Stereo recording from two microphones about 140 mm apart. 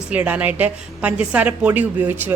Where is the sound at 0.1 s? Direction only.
10° right (ahead or behind).